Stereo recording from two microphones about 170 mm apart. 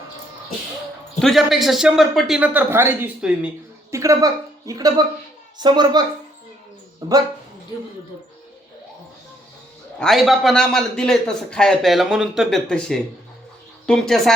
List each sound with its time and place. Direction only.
1.2 s a man's voice: centre (ahead or behind)
3.9 s a woman's voice: 20° right (ahead or behind)
7.0 s a sound: 25° right (ahead or behind)
10.0 s a man's voice: centre (ahead or behind)